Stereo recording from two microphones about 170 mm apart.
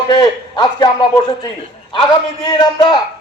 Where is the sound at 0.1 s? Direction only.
25° left (ahead or behind).